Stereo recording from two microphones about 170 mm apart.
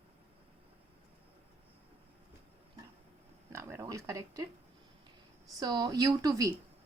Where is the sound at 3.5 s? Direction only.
15° right (ahead or behind).